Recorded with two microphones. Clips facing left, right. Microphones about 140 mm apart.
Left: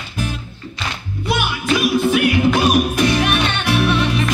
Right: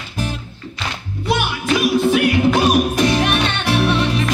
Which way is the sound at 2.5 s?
35° right (ahead or behind).